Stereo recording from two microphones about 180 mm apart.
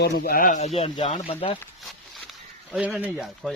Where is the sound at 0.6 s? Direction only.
35° left (ahead or behind).